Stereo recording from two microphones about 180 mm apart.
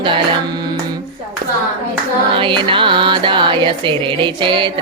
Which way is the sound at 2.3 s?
30° right (ahead or behind).